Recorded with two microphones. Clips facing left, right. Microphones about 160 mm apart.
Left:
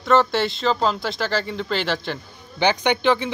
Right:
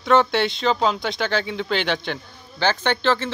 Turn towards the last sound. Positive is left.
turn(degrees=15)  # may be behind; listen again after turning